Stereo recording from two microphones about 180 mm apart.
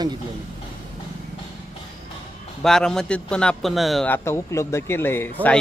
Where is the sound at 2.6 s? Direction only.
5° left (ahead or behind).